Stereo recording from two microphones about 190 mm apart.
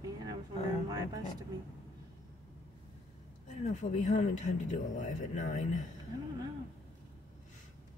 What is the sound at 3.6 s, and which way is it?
A man's voice, 40° left (ahead or behind).